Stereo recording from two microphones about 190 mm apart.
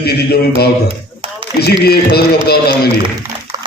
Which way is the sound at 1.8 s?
55° left (ahead or behind).